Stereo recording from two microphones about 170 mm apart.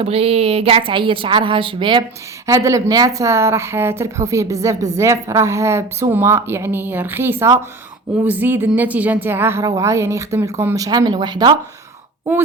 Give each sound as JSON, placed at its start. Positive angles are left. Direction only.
{"t": 0.0, "sound": "a woman's voice", "side_deg": -35}
{"t": 2.5, "sound": "a woman's voice", "side_deg": -20}